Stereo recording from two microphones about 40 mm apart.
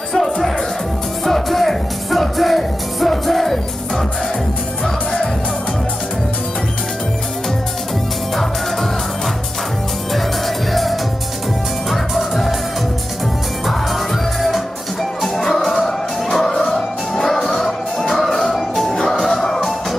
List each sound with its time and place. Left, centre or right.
0.1 s music: centre
10.7 s music: centre
15.2 s music: centre